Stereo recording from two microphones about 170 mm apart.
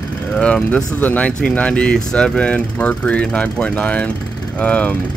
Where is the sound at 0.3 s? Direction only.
5° left (ahead or behind).